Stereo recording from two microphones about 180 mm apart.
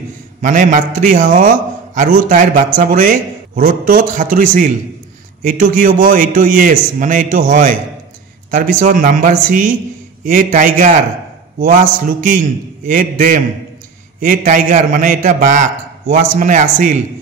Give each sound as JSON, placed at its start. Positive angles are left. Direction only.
{"t": 0.4, "sound": "a man's voice", "side_deg": -45}